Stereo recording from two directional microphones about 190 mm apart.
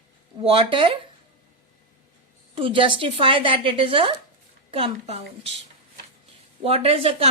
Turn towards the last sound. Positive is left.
turn(degrees=-30)  # may be behind; listen again after turning